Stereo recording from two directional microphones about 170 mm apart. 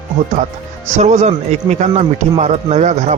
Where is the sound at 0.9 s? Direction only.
45° right (ahead or behind).